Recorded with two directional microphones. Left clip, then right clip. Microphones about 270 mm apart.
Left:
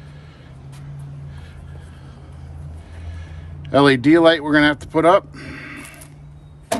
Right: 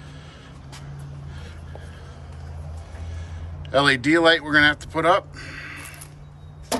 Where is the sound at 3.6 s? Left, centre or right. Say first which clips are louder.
Left 5 dB; centre.